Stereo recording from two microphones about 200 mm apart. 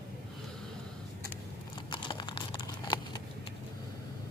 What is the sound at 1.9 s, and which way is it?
Crunch, 25° left (ahead or behind).